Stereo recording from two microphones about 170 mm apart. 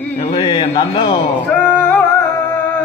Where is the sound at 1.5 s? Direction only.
10° left (ahead or behind).